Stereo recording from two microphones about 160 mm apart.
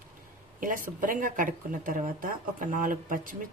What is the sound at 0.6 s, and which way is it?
Speech, 55° right (ahead or behind).